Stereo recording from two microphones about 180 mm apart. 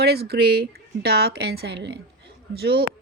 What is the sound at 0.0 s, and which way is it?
A woman's voice, 60° right (ahead or behind).